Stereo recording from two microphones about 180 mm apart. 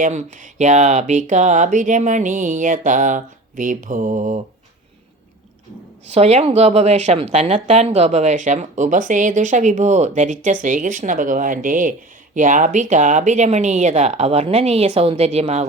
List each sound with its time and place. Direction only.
0.0 s speech: 40° right (ahead or behind)
6.1 s a woman's voice: 35° right (ahead or behind)